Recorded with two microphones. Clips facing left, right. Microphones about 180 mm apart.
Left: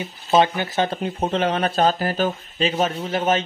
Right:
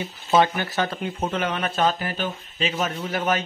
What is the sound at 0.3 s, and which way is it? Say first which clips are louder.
Speech: left 2 dB; 20° left (ahead or behind).